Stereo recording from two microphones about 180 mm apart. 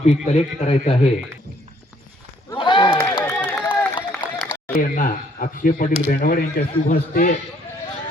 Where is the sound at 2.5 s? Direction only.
25° left (ahead or behind).